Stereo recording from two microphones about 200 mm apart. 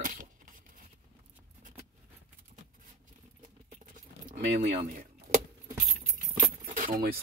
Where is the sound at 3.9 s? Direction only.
40° right (ahead or behind).